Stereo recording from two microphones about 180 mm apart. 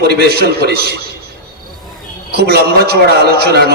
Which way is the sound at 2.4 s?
60° right (ahead or behind).